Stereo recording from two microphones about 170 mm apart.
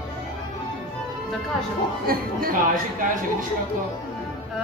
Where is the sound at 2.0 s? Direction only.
60° right (ahead or behind).